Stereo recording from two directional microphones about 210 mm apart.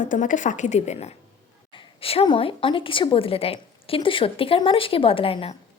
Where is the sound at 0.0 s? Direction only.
40° left (ahead or behind).